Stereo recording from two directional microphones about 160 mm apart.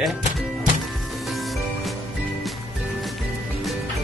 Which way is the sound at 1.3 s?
Centre (ahead or behind).